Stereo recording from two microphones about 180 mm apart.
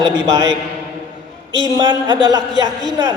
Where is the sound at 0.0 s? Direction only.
20° right (ahead or behind).